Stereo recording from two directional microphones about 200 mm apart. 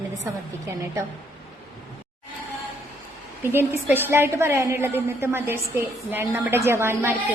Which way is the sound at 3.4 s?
10° right (ahead or behind).